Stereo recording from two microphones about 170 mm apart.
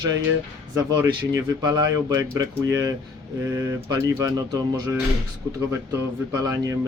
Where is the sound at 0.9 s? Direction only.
20° right (ahead or behind).